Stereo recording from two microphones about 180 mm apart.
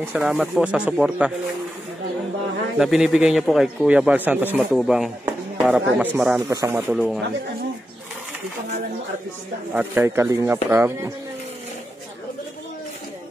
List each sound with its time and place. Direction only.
0.0 s a man's voice: 5° right (ahead or behind)
2.8 s a man's voice: centre (ahead or behind)
6.9 s a man's voice: centre (ahead or behind)
9.8 s speech: 10° right (ahead or behind)